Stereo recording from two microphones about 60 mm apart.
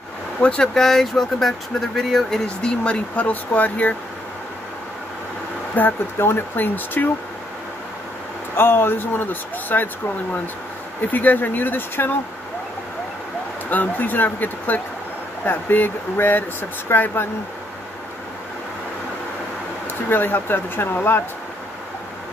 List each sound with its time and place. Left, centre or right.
0.4 s speech: centre
2.4 s speech: centre
5.8 s speech: left
8.5 s speech: left
11.1 s speech: left
13.7 s speech: left
20.1 s speech: left